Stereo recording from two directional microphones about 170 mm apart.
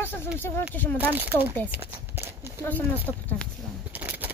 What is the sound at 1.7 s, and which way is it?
Horse, 15° right (ahead or behind).